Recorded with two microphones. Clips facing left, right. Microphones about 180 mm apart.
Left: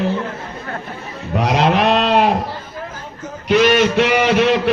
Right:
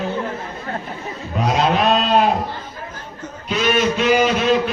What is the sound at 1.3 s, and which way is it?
Livestock, 70° left (ahead or behind).